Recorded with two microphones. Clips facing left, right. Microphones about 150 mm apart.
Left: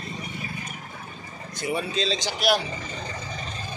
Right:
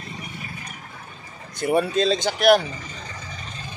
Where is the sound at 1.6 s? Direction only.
50° right (ahead or behind).